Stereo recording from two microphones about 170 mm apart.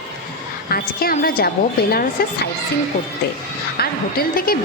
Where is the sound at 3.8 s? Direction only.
60° left (ahead or behind).